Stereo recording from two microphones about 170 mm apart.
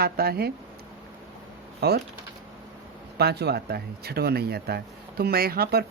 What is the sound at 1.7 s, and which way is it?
Speech, 70° right (ahead or behind).